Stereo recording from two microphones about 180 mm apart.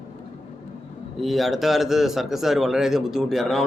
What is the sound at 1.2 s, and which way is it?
A man's voice, centre (ahead or behind).